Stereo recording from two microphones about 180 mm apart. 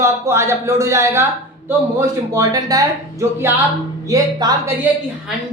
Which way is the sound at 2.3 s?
20° right (ahead or behind).